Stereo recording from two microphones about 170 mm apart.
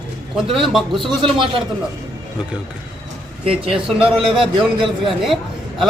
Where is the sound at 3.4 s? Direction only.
35° right (ahead or behind).